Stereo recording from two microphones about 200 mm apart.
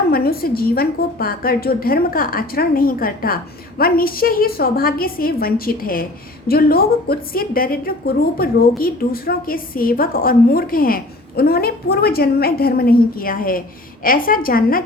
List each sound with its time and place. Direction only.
0.1 s a woman's voice: 50° left (ahead or behind)